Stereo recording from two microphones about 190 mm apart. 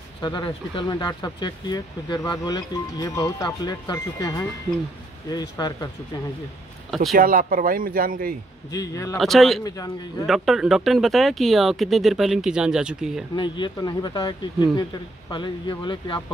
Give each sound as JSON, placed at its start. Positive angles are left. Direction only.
{"t": 0.2, "sound": "speech", "side_deg": 25}
{"t": 6.9, "sound": "speech", "side_deg": 0}
{"t": 7.2, "sound": "speech", "side_deg": -50}
{"t": 8.7, "sound": "speech", "side_deg": 15}
{"t": 9.2, "sound": "speech", "side_deg": 0}
{"t": 13.4, "sound": "speech", "side_deg": 25}
{"t": 15.3, "sound": "speech", "side_deg": 25}